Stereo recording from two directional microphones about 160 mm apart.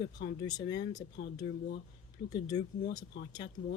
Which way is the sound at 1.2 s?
90° left.